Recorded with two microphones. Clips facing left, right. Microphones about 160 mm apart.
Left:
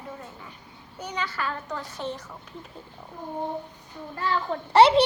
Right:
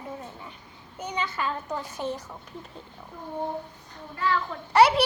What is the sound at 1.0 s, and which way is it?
Speech, 20° right (ahead or behind).